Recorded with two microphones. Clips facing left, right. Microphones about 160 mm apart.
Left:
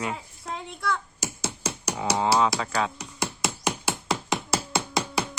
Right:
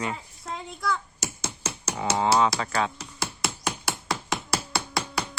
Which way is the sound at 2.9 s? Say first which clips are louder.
Left 3 dB; 15° left (ahead or behind).